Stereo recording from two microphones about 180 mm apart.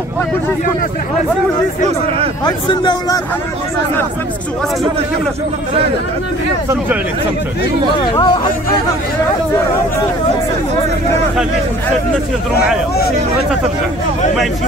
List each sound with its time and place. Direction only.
2.4 s a man's voice: 25° left (ahead or behind)
8.1 s a man's voice: 25° left (ahead or behind)